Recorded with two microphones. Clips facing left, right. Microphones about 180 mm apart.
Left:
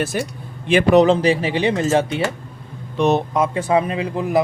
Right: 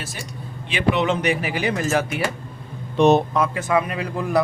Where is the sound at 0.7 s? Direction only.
45° left (ahead or behind); by 2.3 s 25° left (ahead or behind).